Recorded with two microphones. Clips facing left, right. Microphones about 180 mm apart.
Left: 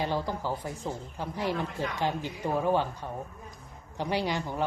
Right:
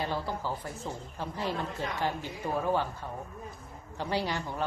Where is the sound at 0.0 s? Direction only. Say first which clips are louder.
Left 3 dB; 15° left (ahead or behind).